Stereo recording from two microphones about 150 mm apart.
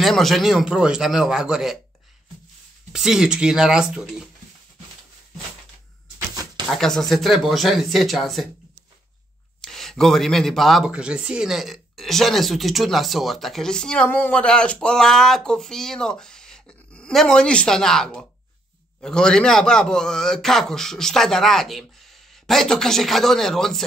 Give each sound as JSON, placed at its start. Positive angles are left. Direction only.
{"t": 0.0, "sound": "speech", "side_deg": 0}
{"t": 2.9, "sound": "speech", "side_deg": -5}
{"t": 6.1, "sound": "a sound", "side_deg": -25}
{"t": 6.7, "sound": "speech", "side_deg": 0}
{"t": 9.6, "sound": "speech", "side_deg": 0}